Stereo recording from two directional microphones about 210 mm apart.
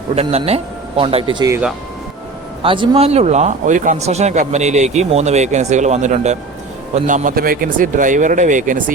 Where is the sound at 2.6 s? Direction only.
25° right (ahead or behind).